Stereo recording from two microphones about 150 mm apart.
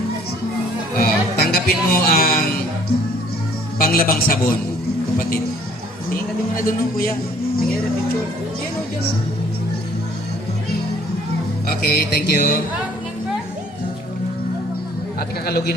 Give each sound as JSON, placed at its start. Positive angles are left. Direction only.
{"t": 0.9, "sound": "music", "side_deg": 90}
{"t": 3.8, "sound": "speech", "side_deg": 75}
{"t": 6.7, "sound": "a man's voice", "side_deg": 70}
{"t": 11.8, "sound": "mantra", "side_deg": 85}
{"t": 15.4, "sound": "speech", "side_deg": 90}